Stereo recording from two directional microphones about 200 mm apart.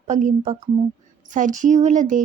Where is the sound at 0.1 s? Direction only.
40° right (ahead or behind).